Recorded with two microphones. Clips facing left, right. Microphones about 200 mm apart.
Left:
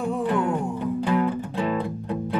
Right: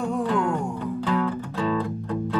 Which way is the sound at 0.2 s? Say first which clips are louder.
Left 1 dB; 15° left (ahead or behind).